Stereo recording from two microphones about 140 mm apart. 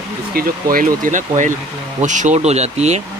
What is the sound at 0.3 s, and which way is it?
Speech, 90° right.